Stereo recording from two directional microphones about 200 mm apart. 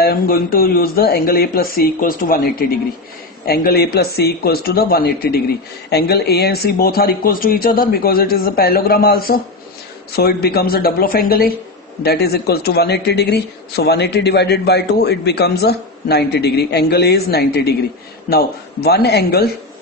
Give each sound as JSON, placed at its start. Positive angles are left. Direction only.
{"t": 0.0, "sound": "speech", "side_deg": 50}
{"t": 3.4, "sound": "speech", "side_deg": 50}